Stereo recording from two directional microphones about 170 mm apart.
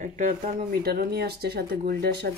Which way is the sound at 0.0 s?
45° right (ahead or behind).